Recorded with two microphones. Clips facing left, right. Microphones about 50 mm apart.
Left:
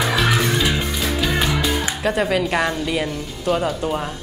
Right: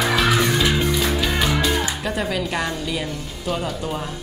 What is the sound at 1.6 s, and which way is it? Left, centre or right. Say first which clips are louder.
Music: even; left.